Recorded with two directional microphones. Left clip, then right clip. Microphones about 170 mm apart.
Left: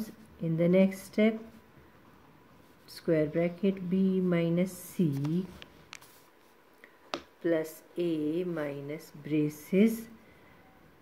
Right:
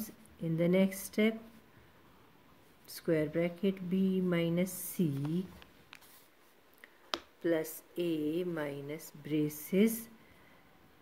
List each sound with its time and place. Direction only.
0.0 s a woman's voice: 20° right (ahead or behind)
2.9 s a woman's voice: 20° right (ahead or behind)
5.6 s a sound: 20° left (ahead or behind)
7.4 s a woman's voice: 20° right (ahead or behind)